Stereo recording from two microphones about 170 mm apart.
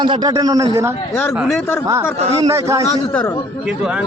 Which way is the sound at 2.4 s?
15° right (ahead or behind).